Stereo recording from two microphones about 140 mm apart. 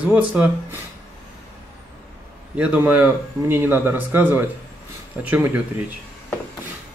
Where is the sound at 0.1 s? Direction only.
10° right (ahead or behind).